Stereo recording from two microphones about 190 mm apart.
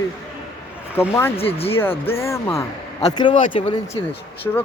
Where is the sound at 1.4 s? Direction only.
30° left (ahead or behind).